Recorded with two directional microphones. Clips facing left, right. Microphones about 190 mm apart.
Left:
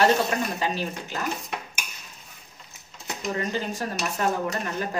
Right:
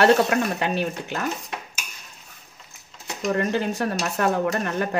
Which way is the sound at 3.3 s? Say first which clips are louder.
Right 5 dB; 60° right (ahead or behind).